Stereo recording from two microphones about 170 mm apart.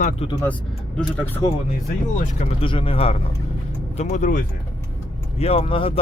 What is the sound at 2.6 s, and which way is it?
Speech, 30° left (ahead or behind).